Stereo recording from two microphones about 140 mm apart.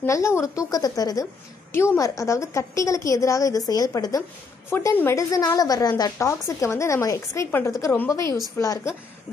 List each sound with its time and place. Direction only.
0.0 s a woman's voice: 20° left (ahead or behind)
4.6 s a woman's voice: 15° left (ahead or behind)